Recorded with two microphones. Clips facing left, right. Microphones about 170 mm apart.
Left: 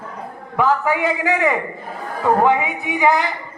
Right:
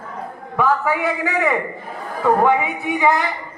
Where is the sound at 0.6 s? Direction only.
15° left (ahead or behind).